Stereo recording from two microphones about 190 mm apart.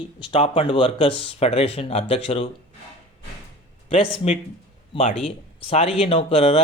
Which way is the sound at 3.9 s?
35° left (ahead or behind).